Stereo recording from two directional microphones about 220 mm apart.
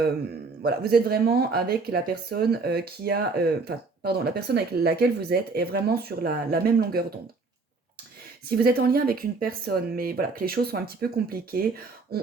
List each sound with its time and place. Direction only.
0.6 s speech: 45° right (ahead or behind)
8.4 s speech: 45° right (ahead or behind)